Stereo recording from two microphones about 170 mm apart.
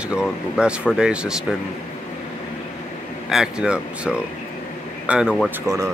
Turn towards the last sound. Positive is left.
turn(degrees=-20)  # may be behind; listen again after turning